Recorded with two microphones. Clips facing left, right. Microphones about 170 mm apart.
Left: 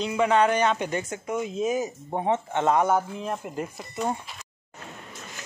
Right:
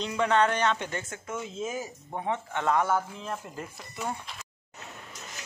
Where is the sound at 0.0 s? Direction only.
10° left (ahead or behind).